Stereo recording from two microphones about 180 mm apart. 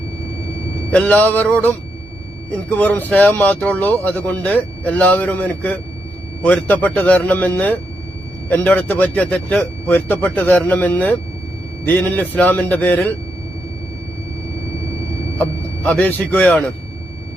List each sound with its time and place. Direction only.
0.9 s speech: 5° left (ahead or behind)
15.4 s speech: 10° left (ahead or behind)